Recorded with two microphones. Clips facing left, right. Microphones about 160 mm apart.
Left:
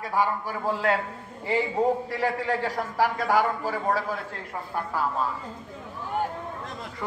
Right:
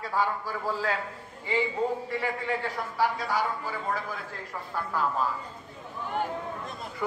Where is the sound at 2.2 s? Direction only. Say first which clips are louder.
Left 7 dB; 40° left (ahead or behind).